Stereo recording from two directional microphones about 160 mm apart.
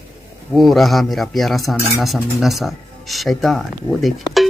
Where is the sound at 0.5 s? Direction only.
Centre (ahead or behind).